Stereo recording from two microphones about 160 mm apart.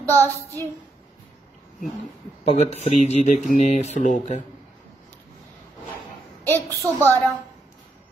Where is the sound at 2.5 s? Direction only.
45° left (ahead or behind).